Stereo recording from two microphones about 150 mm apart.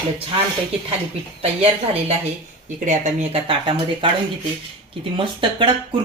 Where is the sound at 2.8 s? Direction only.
55° right (ahead or behind).